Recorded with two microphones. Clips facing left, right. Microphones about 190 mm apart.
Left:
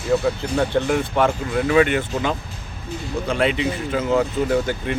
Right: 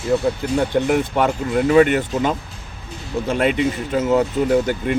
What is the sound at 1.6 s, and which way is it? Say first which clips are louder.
Speech: right 3 dB; 40° right (ahead or behind).